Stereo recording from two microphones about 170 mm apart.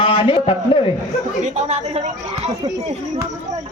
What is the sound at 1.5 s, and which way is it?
Speech, 40° right (ahead or behind).